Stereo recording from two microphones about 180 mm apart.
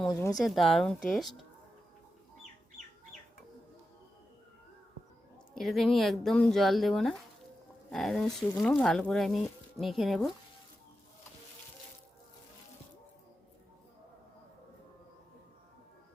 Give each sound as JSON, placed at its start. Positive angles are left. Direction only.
{"t": 0.1, "sound": "speech", "side_deg": 15}
{"t": 0.3, "sound": "speech", "side_deg": 0}
{"t": 5.5, "sound": "speech", "side_deg": 0}